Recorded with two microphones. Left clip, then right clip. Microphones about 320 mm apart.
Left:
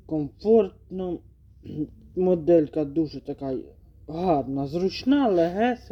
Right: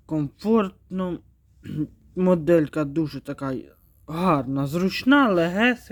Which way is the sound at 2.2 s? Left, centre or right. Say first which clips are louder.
Even; right.